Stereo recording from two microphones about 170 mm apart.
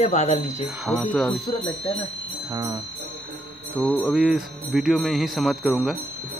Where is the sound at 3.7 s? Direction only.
5° left (ahead or behind).